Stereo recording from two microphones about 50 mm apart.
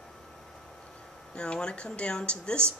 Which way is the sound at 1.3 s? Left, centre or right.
Centre.